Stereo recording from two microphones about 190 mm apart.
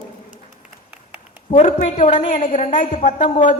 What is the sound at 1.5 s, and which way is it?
A woman's voice, 40° left (ahead or behind).